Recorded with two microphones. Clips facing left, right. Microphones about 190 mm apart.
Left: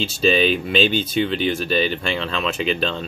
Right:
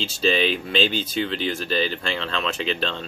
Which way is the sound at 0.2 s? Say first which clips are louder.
Left 4 dB; 15° left (ahead or behind).